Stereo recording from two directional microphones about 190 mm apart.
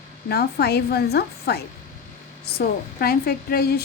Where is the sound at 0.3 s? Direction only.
55° left (ahead or behind).